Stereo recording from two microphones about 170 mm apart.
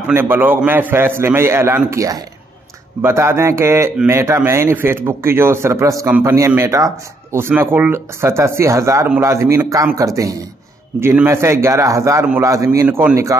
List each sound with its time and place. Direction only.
0.1 s speech: 15° right (ahead or behind)